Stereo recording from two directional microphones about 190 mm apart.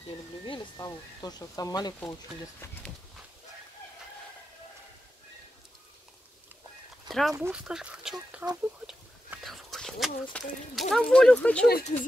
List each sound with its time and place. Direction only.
0.5 s speech: 20° left (ahead or behind)
7.1 s a sound: centre (ahead or behind)
7.3 s speech: 15° right (ahead or behind)
8.8 s whispering: centre (ahead or behind)
10.3 s speech: 5° left (ahead or behind)